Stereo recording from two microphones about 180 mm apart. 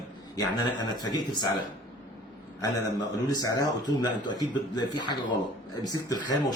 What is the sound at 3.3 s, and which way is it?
Speech, 20° left (ahead or behind).